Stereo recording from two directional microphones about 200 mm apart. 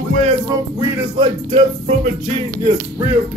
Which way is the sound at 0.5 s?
20° right (ahead or behind).